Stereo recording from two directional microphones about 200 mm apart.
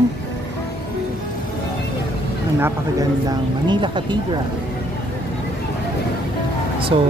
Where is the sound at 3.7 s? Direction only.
25° right (ahead or behind).